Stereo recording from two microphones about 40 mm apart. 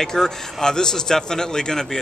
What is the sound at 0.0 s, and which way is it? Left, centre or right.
A man's voice, centre.